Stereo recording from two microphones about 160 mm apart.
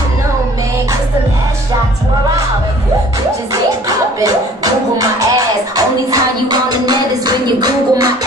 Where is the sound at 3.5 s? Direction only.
20° right (ahead or behind).